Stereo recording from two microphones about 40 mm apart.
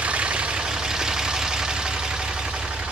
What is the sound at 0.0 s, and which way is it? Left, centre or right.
Vehicle, right.